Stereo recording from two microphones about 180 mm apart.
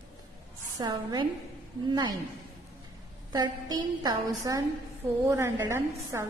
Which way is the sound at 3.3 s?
20° right (ahead or behind).